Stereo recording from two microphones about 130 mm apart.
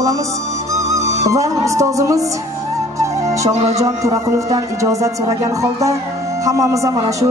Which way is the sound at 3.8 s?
25° right (ahead or behind).